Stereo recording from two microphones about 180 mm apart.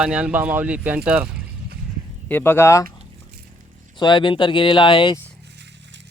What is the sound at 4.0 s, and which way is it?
Speech, 25° left (ahead or behind).